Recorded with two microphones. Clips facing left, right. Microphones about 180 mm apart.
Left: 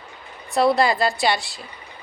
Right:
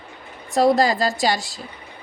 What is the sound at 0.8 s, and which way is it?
Speech, 40° right (ahead or behind).